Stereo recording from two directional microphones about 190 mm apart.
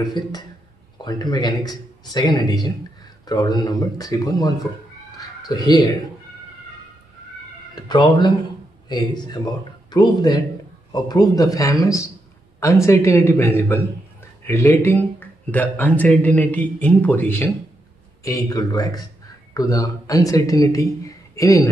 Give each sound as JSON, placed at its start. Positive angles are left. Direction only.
{"t": 0.0, "sound": "speech", "side_deg": 20}
{"t": 5.1, "sound": "a sound", "side_deg": 20}
{"t": 7.7, "sound": "a man's voice", "side_deg": 25}